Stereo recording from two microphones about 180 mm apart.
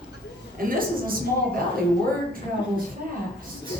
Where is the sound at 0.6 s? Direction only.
50° right (ahead or behind).